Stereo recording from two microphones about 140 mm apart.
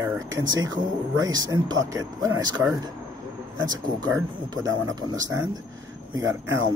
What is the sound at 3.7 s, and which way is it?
Speech, 25° right (ahead or behind).